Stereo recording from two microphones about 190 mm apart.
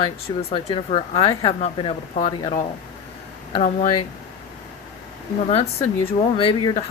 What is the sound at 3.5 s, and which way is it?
Speech, 45° left (ahead or behind).